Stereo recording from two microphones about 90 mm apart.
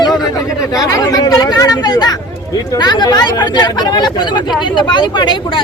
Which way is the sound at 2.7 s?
55° left (ahead or behind).